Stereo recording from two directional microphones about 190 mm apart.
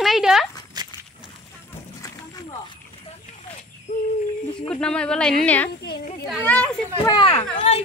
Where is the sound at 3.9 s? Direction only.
45° left (ahead or behind).